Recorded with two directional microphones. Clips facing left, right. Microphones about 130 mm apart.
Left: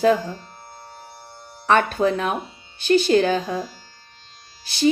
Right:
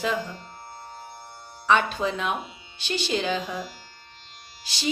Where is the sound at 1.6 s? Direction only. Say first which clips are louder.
Left 4 dB; 55° left (ahead or behind).